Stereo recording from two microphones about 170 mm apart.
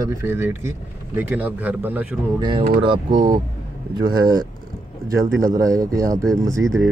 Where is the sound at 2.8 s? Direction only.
25° right (ahead or behind).